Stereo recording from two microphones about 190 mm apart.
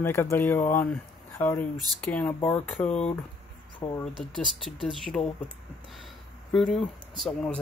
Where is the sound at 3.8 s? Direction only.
25° left (ahead or behind).